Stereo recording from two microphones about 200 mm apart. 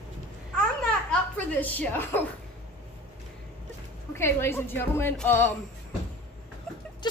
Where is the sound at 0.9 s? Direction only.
5° left (ahead or behind).